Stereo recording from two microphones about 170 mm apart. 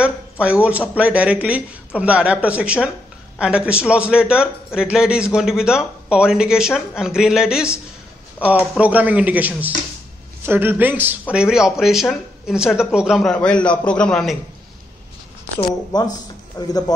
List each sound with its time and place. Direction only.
0.0 s a sound: 5° right (ahead or behind)
0.7 s speech: 5° right (ahead or behind)
15.9 s speech: 25° left (ahead or behind)